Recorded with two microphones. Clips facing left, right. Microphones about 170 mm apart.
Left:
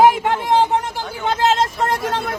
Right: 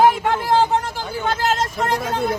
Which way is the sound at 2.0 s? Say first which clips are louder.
Left 1 dB; 75° left (ahead or behind).